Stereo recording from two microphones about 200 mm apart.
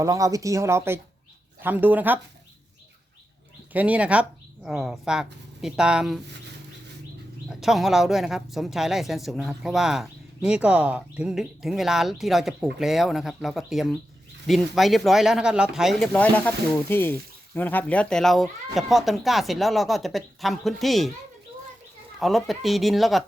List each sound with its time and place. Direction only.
0.0 s speech: 15° right (ahead or behind)
3.7 s speech: 5° right (ahead or behind)
7.5 s speech: centre (ahead or behind)
22.2 s speech: centre (ahead or behind)